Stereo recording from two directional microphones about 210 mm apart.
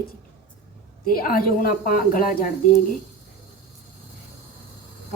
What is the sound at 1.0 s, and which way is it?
A woman's voice, 45° left (ahead or behind).